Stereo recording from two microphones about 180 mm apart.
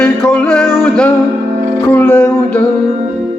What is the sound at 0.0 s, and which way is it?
Music, 5° left (ahead or behind).